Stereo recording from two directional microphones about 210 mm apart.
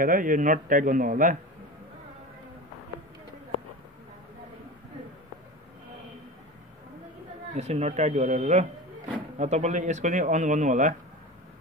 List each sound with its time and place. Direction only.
0.0 s speech: 40° right (ahead or behind)
7.5 s speech: 30° right (ahead or behind)